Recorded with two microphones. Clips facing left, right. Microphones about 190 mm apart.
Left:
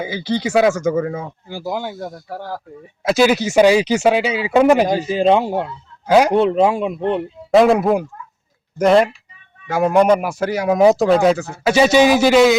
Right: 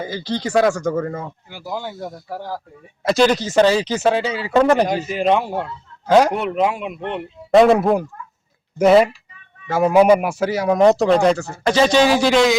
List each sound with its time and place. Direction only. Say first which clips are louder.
0.0 s speech: left 3 dB; 5° left (ahead or behind)
1.5 s speech: left 8 dB; 30° left (ahead or behind)
3.0 s speech: left 1 dB; 5° left (ahead or behind)
5.0 s speech: left 3 dB; 30° left (ahead or behind)
6.1 s speech: even; centre (ahead or behind)
6.3 s speech: left 6 dB; 30° left (ahead or behind)
7.5 s speech: even; centre (ahead or behind)